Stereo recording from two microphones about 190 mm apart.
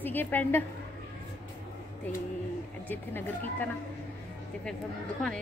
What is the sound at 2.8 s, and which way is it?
Speech, 10° left (ahead or behind).